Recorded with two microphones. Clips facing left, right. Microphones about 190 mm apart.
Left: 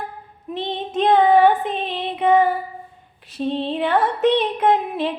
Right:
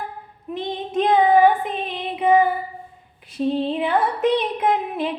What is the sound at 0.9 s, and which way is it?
Child singing, 5° right (ahead or behind).